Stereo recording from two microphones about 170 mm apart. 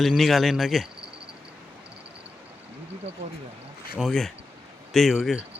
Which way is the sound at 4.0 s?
Centre (ahead or behind).